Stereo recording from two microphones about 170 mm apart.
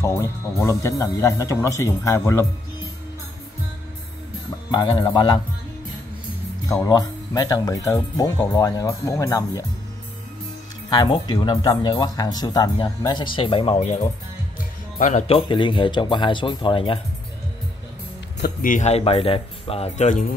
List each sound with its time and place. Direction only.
0.0 s speech: 15° left (ahead or behind)
4.6 s speech: 25° left (ahead or behind)
6.6 s speech: 20° left (ahead or behind)
10.9 s speech: 25° left (ahead or behind)
13.7 s speech: 45° left (ahead or behind)
15.2 s speech: 30° left (ahead or behind)
18.4 s speech: 55° left (ahead or behind)